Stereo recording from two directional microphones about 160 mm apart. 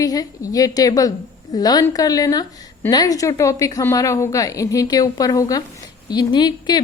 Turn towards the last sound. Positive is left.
turn(degrees=25)  # may be behind; listen again after turning